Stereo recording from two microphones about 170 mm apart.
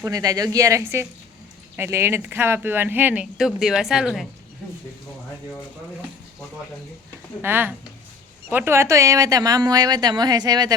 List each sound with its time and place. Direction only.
0.0 s speech: 20° right (ahead or behind); by 4.3 s centre (ahead or behind)
7.4 s speech: 10° right (ahead or behind)